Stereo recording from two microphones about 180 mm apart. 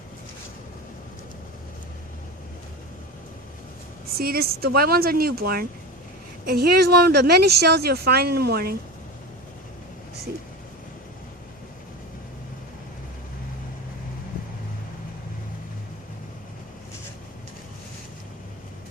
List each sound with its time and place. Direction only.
4.2 s speech: 55° right (ahead or behind)